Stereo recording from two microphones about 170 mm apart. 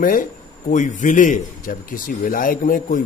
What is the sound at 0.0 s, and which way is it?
A man's voice, 55° left (ahead or behind).